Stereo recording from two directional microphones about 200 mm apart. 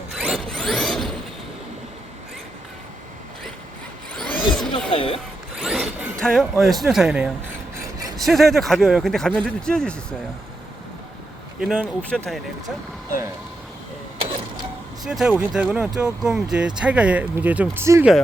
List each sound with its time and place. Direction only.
0.2 s zipper: centre (ahead or behind)
4.2 s a sound: 5° left (ahead or behind)
4.9 s speech: 25° left (ahead or behind)
5.6 s speech: centre (ahead or behind)
11.6 s speech: centre (ahead or behind)
15.0 s speech: centre (ahead or behind)